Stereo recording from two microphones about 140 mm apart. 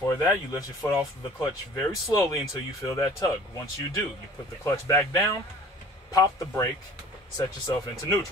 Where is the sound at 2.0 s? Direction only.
25° left (ahead or behind).